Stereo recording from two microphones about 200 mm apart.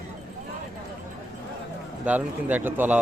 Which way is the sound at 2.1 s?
10° right (ahead or behind).